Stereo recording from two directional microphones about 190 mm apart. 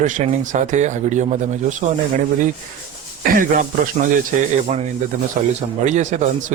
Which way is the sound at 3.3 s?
45° right (ahead or behind).